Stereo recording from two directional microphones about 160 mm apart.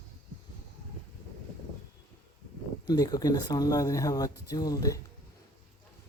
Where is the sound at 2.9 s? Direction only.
25° left (ahead or behind).